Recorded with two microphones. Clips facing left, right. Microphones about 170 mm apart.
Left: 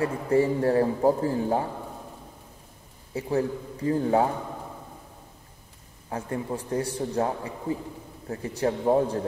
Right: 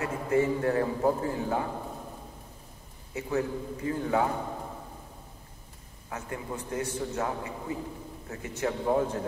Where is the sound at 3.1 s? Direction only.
30° left (ahead or behind).